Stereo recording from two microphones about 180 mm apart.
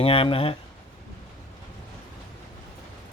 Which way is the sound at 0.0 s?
30° left (ahead or behind).